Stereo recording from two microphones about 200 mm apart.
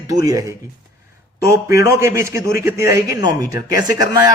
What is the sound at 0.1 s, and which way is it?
A man's voice, 15° right (ahead or behind).